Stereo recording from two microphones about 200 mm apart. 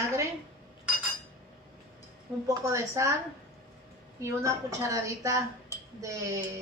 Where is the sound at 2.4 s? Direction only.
15° right (ahead or behind).